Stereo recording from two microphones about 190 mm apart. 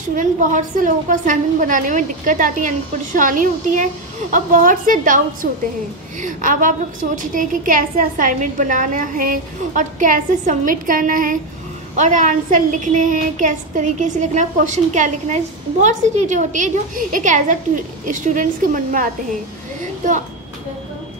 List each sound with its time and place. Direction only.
0.1 s a woman's voice: 40° right (ahead or behind)